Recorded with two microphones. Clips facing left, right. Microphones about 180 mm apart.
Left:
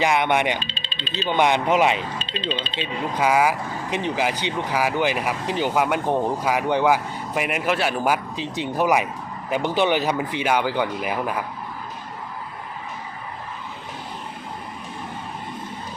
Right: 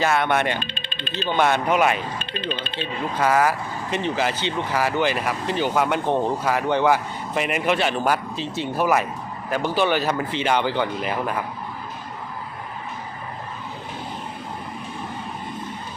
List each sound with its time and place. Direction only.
0.0 s speech: 15° left (ahead or behind)
0.6 s speech: 55° right (ahead or behind)
1.4 s speech: 15° left (ahead or behind)
2.1 s speech: 55° right (ahead or behind)
2.8 s speech: 10° left (ahead or behind)